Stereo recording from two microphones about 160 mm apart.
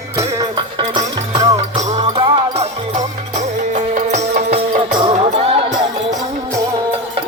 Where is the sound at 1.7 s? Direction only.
45° right (ahead or behind).